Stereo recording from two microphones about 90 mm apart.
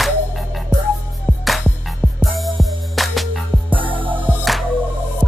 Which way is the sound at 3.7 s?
70° right (ahead or behind).